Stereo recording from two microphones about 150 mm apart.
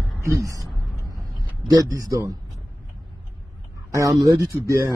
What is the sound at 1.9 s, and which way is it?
Speech, 25° right (ahead or behind).